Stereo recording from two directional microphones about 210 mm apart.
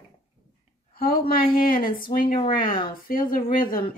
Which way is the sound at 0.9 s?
45° left (ahead or behind).